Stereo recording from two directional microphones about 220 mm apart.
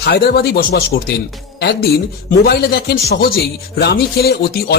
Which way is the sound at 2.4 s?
45° left (ahead or behind).